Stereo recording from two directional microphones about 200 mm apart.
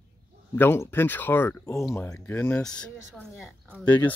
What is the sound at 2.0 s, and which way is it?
Speech, 10° left (ahead or behind).